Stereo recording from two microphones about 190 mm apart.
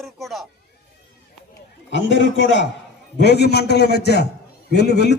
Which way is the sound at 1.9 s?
70° left (ahead or behind).